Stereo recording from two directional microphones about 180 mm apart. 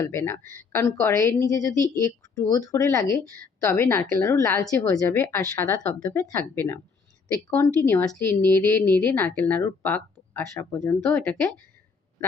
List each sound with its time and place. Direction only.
0.0 s a woman's voice: 15° left (ahead or behind)
0.4 s a woman's voice: 50° right (ahead or behind)
0.7 s a woman's voice: 15° left (ahead or behind)